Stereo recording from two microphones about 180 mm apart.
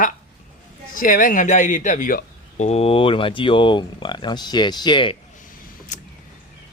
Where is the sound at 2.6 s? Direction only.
35° left (ahead or behind).